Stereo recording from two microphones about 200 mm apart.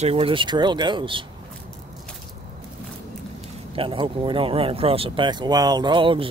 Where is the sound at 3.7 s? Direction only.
25° right (ahead or behind).